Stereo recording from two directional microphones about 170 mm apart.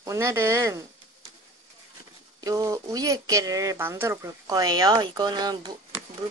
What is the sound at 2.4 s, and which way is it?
Speech, 20° right (ahead or behind).